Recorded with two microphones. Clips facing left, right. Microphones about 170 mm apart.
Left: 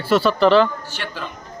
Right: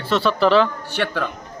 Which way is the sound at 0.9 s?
65° right (ahead or behind).